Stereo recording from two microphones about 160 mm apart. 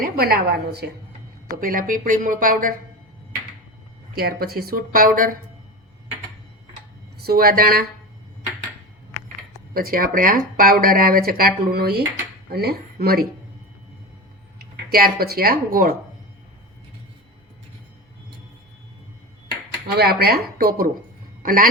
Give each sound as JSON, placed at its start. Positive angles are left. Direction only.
{"t": 0.0, "sound": "speech", "side_deg": -70}
{"t": 1.6, "sound": "speech", "side_deg": -60}
{"t": 4.1, "sound": "speech", "side_deg": -70}
{"t": 7.2, "sound": "speech", "side_deg": -70}
{"t": 9.7, "sound": "speech", "side_deg": -65}
{"t": 14.6, "sound": "speech", "side_deg": -65}
{"t": 20.0, "sound": "a man's voice", "side_deg": -80}